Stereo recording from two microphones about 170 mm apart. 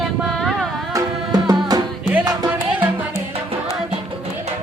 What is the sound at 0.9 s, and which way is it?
Music, 20° right (ahead or behind).